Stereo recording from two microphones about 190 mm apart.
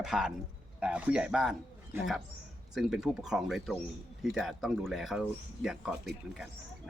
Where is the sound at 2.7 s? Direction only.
5° right (ahead or behind).